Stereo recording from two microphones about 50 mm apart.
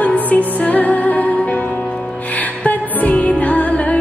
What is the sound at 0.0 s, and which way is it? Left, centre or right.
Music, left.